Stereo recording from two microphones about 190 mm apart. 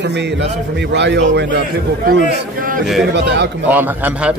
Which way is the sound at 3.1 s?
65° right (ahead or behind).